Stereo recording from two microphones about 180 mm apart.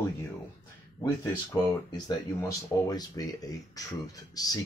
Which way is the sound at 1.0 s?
20° left (ahead or behind).